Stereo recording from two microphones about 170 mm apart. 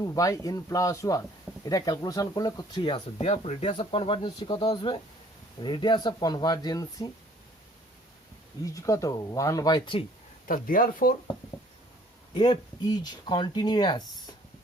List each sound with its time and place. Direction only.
0.0 s speech: 20° left (ahead or behind)
8.6 s speech: 20° left (ahead or behind)
10.5 s speech: 55° left (ahead or behind)
12.3 s speech: 25° left (ahead or behind)